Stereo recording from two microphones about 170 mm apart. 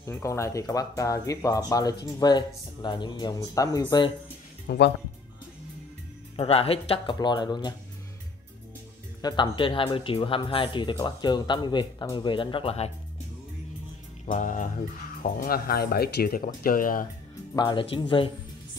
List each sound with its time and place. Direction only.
0.0 s speech: 15° left (ahead or behind)
4.6 s speech: 80° left
6.3 s speech: 35° left (ahead or behind)
7.2 s speech: 25° left (ahead or behind)
9.2 s speech: 30° left (ahead or behind)
14.2 s music: 50° left (ahead or behind)
15.2 s speech: 60° left (ahead or behind)
17.6 s speech: 30° left (ahead or behind)